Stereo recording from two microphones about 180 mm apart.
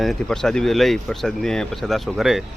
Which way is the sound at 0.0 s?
Centre (ahead or behind).